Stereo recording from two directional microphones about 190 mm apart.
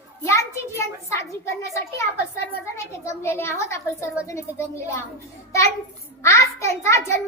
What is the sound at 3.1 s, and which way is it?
A child's voice, 15° left (ahead or behind).